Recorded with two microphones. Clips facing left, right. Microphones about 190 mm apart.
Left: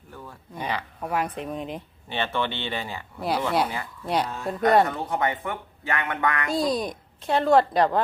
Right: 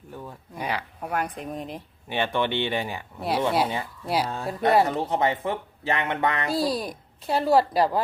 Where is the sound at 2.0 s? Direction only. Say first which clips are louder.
Right 2 dB; 15° right (ahead or behind).